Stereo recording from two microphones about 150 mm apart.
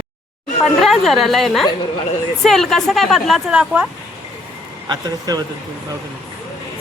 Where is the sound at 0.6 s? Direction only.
Centre (ahead or behind).